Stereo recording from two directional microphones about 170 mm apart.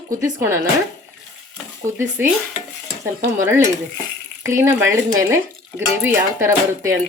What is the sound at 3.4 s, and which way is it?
Speech, 15° right (ahead or behind).